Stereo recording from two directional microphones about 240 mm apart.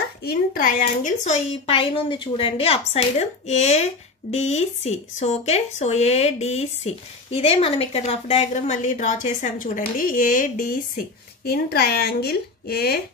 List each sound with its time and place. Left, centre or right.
0.2 s speech: left